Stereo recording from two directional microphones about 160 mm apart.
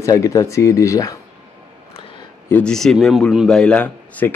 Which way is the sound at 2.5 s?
5° left (ahead or behind).